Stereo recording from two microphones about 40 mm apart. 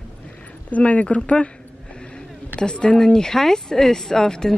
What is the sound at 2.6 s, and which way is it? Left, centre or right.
Speech, left.